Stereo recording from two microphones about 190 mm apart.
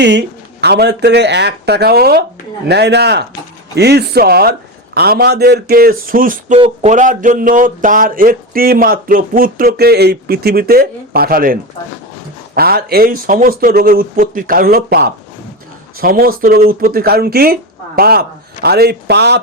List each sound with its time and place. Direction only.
0.0 s speech: 65° right (ahead or behind)
12.5 s speech: 55° right (ahead or behind)